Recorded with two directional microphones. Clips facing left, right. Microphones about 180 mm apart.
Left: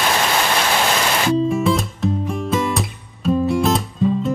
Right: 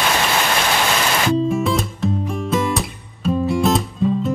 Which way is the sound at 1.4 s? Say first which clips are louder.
Left 1 dB; centre (ahead or behind).